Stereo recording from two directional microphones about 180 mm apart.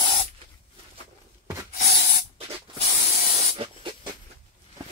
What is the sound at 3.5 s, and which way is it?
Spray, 30° right (ahead or behind).